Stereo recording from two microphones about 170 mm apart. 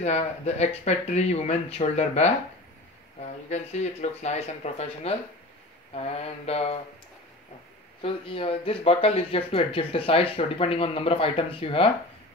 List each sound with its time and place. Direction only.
0.0 s speech: 40° left (ahead or behind)
8.0 s speech: 35° left (ahead or behind)